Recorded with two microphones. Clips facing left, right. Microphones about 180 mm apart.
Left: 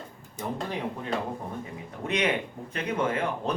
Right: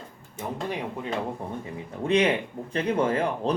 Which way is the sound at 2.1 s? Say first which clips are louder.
Right 5 dB; 30° right (ahead or behind).